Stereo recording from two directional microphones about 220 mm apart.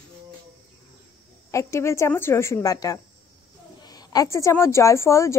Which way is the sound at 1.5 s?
15° left (ahead or behind).